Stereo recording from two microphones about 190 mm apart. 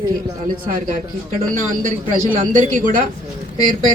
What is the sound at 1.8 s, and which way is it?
A man's voice, 45° right (ahead or behind).